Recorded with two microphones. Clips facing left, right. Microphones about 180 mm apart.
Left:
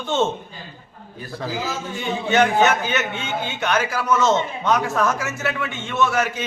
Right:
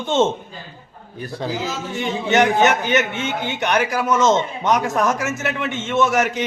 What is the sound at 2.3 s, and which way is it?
A man's voice, 15° right (ahead or behind).